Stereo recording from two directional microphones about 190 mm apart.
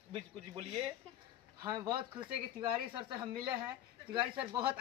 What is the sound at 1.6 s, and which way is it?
Speech, 20° right (ahead or behind).